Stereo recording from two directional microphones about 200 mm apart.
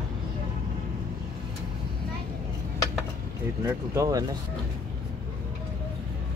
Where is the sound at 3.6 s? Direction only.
15° right (ahead or behind).